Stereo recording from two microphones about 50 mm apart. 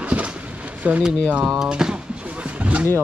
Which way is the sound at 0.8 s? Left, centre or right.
Right.